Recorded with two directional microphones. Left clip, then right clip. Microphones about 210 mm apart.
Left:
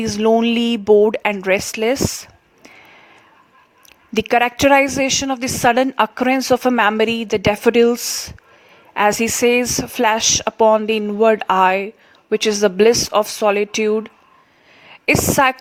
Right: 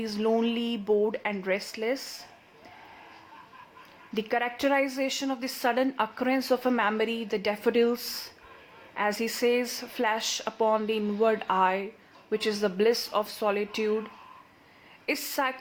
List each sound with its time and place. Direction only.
0.0 s a woman's voice: 45° left (ahead or behind)
4.1 s a woman's voice: 50° left (ahead or behind)